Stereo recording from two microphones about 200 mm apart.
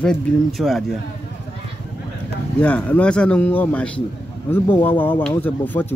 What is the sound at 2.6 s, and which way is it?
Speech, 5° left (ahead or behind).